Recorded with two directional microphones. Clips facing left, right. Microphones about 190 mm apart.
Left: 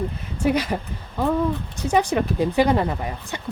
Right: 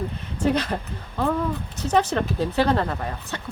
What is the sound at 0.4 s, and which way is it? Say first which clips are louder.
Speech: left 1 dB; 10° left (ahead or behind).